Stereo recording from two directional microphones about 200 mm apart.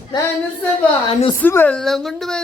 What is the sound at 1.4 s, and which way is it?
A woman's voice, 10° left (ahead or behind).